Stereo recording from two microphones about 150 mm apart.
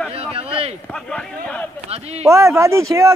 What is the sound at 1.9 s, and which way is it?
Speech, 45° right (ahead or behind).